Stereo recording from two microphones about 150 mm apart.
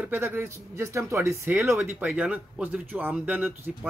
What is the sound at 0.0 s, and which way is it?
Speech, 15° right (ahead or behind).